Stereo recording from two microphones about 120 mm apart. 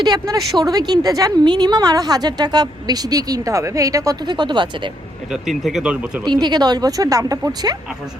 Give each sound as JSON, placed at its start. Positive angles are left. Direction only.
{"t": 0.0, "sound": "a woman's voice", "side_deg": -35}
{"t": 5.3, "sound": "speech", "side_deg": 0}
{"t": 6.2, "sound": "a woman's voice", "side_deg": -40}